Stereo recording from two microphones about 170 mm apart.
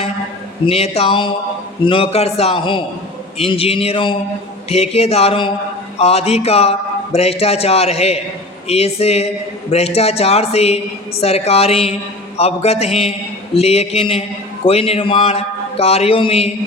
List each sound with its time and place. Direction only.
0.6 s a man's voice: 35° left (ahead or behind)